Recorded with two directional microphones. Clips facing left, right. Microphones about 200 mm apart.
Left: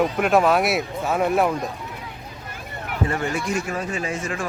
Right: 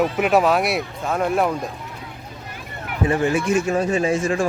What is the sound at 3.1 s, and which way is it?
Speech, 20° right (ahead or behind).